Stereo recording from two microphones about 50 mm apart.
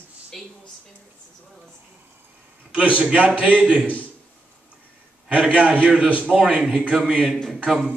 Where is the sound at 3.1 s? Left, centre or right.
Right.